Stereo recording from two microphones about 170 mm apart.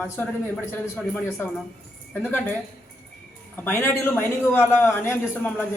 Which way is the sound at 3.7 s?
10° left (ahead or behind).